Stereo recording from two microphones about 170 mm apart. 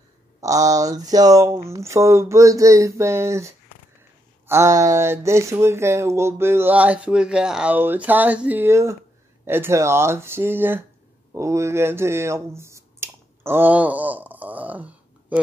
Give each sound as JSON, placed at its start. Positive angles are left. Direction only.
{"t": 0.4, "sound": "speech", "side_deg": -20}